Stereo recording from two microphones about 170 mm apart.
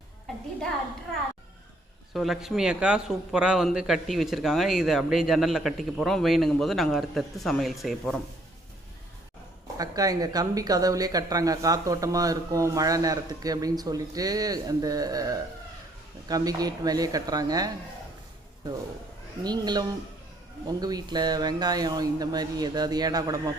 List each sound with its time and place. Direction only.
2.1 s a man's voice: centre (ahead or behind)
9.7 s speech: 20° right (ahead or behind)
19.4 s speech: 25° right (ahead or behind)